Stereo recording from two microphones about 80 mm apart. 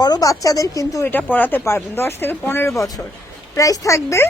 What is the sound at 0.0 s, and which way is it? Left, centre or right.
Speech, left.